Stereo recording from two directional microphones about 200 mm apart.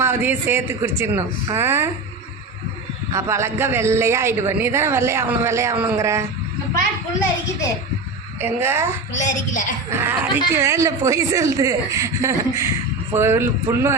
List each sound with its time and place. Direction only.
0.0 s a man's voice: 10° right (ahead or behind)
3.1 s a man's voice: 15° right (ahead or behind)
8.4 s a man's voice: 10° right (ahead or behind)
9.2 s a woman's voice: 40° left (ahead or behind)
9.9 s a man's voice: 10° right (ahead or behind)